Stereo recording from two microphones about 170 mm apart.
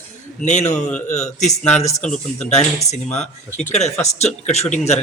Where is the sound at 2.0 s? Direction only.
5° left (ahead or behind).